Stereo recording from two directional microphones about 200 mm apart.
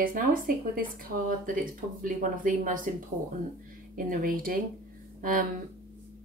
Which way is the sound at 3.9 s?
45° right (ahead or behind).